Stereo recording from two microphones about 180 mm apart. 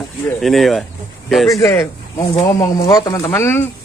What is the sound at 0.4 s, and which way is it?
Speech, centre (ahead or behind).